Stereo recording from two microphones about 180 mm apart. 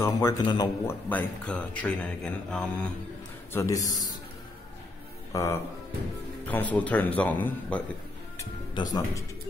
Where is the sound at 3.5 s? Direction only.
15° left (ahead or behind).